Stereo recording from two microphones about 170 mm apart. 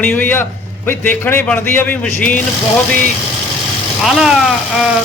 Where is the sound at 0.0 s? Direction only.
10° left (ahead or behind).